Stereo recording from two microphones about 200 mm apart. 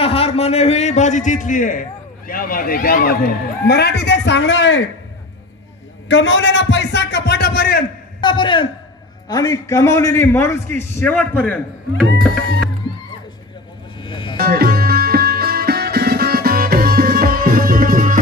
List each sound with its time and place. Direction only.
0.0 s a man's voice: 30° left (ahead or behind); by 4.8 s 65° left (ahead or behind)
6.0 s a man's voice: 70° left (ahead or behind); by 7.8 s 50° left (ahead or behind)
8.2 s a man's voice: 25° left (ahead or behind); by 11.6 s 5° left (ahead or behind)
14.0 s music: 25° left (ahead or behind)
14.4 s music: 50° right (ahead or behind)